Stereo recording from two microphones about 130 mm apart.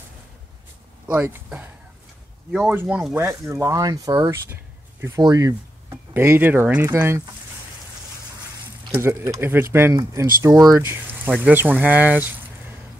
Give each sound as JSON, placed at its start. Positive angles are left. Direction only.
{"t": 1.0, "sound": "speech", "side_deg": -10}
{"t": 3.2, "sound": "speech", "side_deg": -20}
{"t": 8.9, "sound": "speech", "side_deg": -25}